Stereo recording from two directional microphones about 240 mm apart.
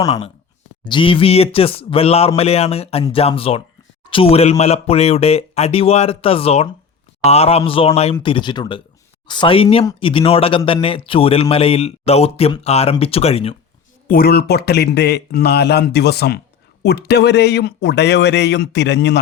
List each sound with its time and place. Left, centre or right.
0.9 s speech: left
14.1 s speech: left